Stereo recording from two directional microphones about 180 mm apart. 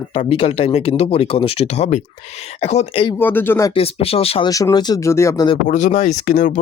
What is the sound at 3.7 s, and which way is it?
Speech, 35° left (ahead or behind).